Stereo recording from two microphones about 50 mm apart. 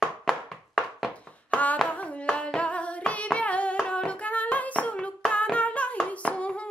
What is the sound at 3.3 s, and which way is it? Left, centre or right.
Hands, left.